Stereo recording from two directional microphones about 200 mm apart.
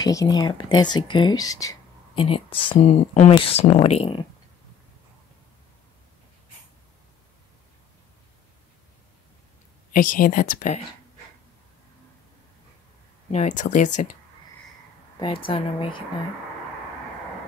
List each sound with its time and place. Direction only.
0.0 s speech: 20° left (ahead or behind)
9.9 s speech: 45° left (ahead or behind)
13.3 s speech: 35° left (ahead or behind)
15.1 s speech: 25° left (ahead or behind)